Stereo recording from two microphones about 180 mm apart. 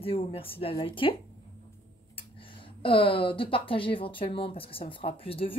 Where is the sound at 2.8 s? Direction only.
30° left (ahead or behind).